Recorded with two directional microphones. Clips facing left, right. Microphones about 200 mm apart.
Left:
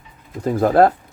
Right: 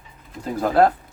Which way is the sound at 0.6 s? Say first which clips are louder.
Left 3 dB; 45° left (ahead or behind).